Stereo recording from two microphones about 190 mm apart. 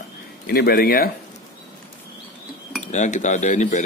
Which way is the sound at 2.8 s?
40° left (ahead or behind).